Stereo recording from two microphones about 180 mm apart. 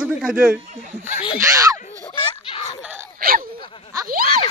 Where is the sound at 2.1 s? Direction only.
30° left (ahead or behind).